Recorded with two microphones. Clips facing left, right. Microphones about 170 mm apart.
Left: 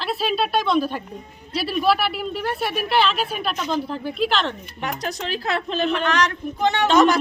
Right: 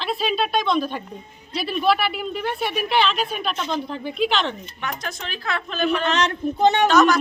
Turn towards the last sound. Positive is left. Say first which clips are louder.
# even
turn(degrees=30)  # may be behind; listen again after turning